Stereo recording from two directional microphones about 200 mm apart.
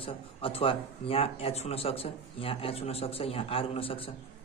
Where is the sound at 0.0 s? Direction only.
30° left (ahead or behind).